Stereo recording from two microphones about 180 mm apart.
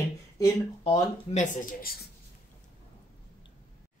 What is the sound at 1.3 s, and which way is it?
Speech, 45° left (ahead or behind).